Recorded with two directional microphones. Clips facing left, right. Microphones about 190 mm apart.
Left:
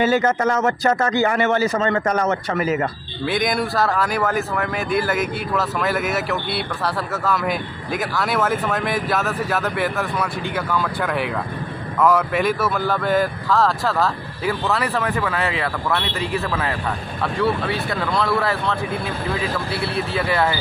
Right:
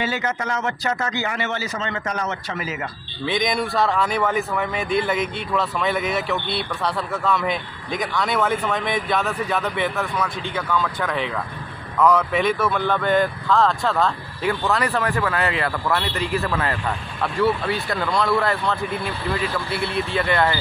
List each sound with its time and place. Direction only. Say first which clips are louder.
0.0 s a man's voice: left 8 dB; 45° left (ahead or behind)
3.3 s speech: left 1 dB; 5° left (ahead or behind)
20.2 s speech: even; 5° left (ahead or behind)